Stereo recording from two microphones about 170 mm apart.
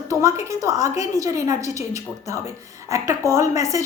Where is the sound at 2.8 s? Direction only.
20° right (ahead or behind).